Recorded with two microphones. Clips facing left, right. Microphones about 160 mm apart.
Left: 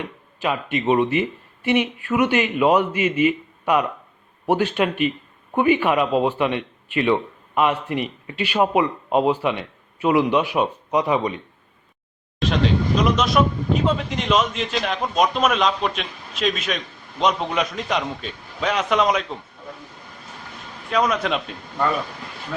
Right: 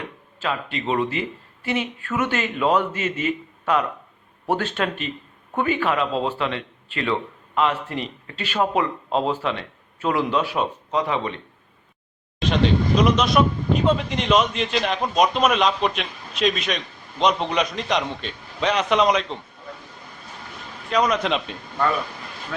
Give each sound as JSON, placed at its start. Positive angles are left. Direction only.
{"t": 0.3, "sound": "a man's voice", "side_deg": 15}
{"t": 1.6, "sound": "a sound", "side_deg": 15}
{"t": 2.0, "sound": "a man's voice", "side_deg": 15}
{"t": 13.0, "sound": "a man's voice", "side_deg": 0}
{"t": 20.9, "sound": "a man's voice", "side_deg": 0}